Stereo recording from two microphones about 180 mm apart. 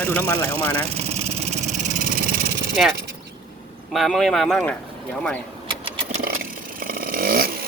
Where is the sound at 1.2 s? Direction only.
35° right (ahead or behind).